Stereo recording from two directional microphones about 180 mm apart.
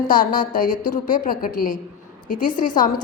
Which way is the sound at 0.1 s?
50° left (ahead or behind).